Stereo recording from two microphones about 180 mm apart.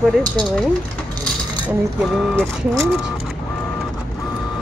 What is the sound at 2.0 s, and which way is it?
Speech, 5° left (ahead or behind).